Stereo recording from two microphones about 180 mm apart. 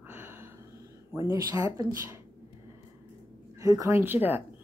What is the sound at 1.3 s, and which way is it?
Speech, 20° right (ahead or behind).